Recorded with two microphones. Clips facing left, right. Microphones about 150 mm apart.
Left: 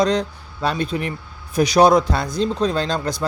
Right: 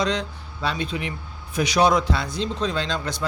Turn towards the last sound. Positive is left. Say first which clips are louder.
# left 5 dB
turn(degrees=40)  # may be behind; listen again after turning